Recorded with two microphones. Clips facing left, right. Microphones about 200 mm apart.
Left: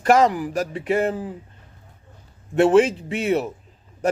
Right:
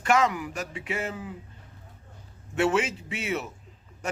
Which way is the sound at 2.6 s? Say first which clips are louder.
Left 10 dB; 35° left (ahead or behind).